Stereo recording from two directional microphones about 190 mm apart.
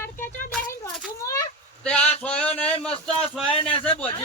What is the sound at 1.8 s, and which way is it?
Speech, 5° left (ahead or behind).